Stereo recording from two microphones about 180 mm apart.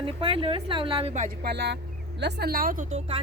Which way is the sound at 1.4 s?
60° right (ahead or behind).